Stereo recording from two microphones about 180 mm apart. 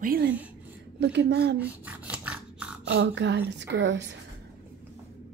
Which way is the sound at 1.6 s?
10° right (ahead or behind).